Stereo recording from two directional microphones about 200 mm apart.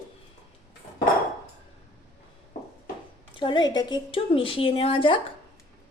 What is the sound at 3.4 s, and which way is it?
A woman's voice, 20° left (ahead or behind).